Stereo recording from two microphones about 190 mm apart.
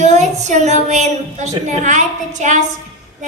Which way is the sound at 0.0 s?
40° right (ahead or behind).